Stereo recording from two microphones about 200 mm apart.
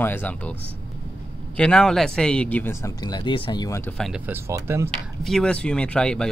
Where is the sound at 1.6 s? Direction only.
5° left (ahead or behind).